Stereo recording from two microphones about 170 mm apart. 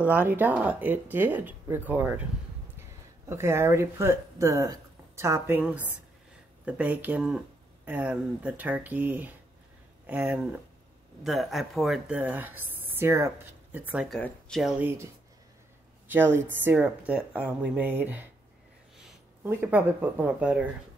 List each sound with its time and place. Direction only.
0.0 s speech: 10° right (ahead or behind)
16.1 s speech: 10° right (ahead or behind)